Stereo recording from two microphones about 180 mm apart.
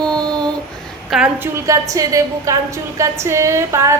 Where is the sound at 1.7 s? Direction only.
20° right (ahead or behind).